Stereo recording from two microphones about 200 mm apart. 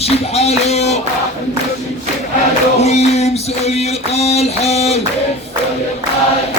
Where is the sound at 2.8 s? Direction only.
35° left (ahead or behind).